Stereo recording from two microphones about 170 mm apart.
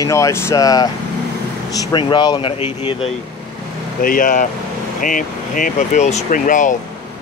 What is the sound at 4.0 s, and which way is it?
Speech, 55° left (ahead or behind).